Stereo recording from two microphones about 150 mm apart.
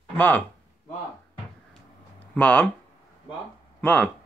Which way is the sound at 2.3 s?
10° left (ahead or behind).